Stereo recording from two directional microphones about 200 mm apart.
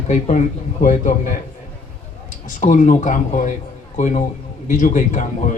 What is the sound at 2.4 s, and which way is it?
A man's voice, 40° left (ahead or behind).